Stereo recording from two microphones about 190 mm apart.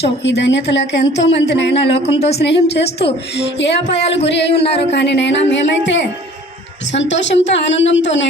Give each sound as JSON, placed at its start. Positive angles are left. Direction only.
{"t": 0.0, "sound": "a woman's voice", "side_deg": 65}